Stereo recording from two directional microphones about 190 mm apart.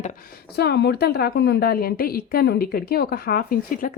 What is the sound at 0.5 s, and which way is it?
A woman's voice, 60° left (ahead or behind).